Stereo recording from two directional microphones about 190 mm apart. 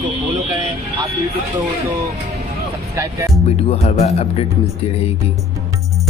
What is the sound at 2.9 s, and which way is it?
Speech, 15° right (ahead or behind).